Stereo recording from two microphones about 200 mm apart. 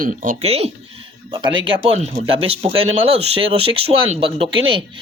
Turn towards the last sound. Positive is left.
turn(degrees=-25)  # may be behind; listen again after turning